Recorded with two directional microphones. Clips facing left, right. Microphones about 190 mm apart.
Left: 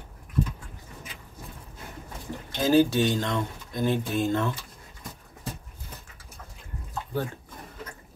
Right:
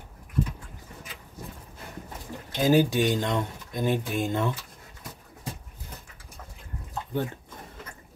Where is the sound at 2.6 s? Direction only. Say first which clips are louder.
Left 1 dB; 15° right (ahead or behind).